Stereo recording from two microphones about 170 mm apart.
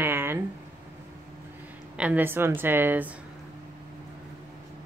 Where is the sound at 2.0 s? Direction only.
10° right (ahead or behind).